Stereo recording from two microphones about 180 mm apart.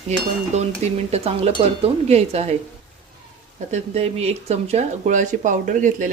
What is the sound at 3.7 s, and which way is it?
Speech, 35° right (ahead or behind).